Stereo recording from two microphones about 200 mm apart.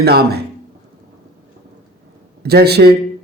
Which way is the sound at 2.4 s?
55° right (ahead or behind).